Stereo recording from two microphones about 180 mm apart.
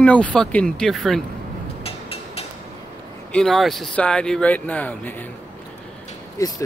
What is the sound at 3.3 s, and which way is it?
Speech, centre (ahead or behind).